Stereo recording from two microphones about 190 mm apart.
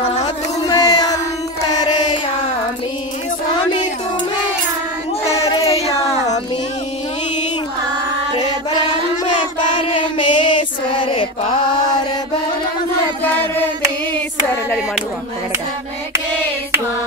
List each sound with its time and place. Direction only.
0.7 s chant: 20° left (ahead or behind)
1.7 s music: 20° left (ahead or behind)
5.2 s child singing: 35° left (ahead or behind)
5.7 s a sound: 30° left (ahead or behind)
9.4 s child singing: 25° left (ahead or behind)